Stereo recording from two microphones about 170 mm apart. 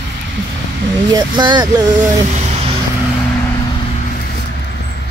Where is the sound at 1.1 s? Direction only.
30° right (ahead or behind).